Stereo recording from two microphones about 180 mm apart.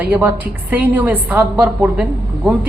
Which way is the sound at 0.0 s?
10° right (ahead or behind).